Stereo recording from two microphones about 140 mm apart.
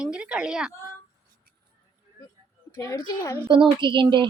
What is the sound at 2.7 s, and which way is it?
Speech, 25° left (ahead or behind).